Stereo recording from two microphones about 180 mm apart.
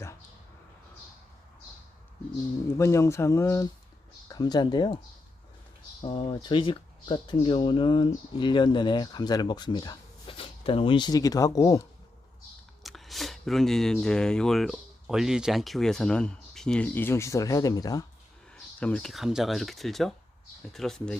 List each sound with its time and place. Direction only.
2.7 s speech: 15° left (ahead or behind)
6.0 s speech: 30° left (ahead or behind)
12.8 s speech: centre (ahead or behind); by 18.0 s 20° left (ahead or behind)
18.5 s speech: 5° left (ahead or behind)